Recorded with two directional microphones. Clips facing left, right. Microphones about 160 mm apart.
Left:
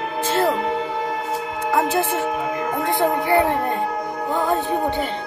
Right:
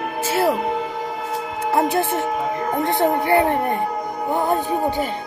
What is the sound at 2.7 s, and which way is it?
Music, 20° right (ahead or behind).